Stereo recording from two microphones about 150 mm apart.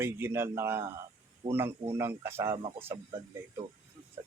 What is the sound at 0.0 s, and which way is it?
Speech, 15° right (ahead or behind).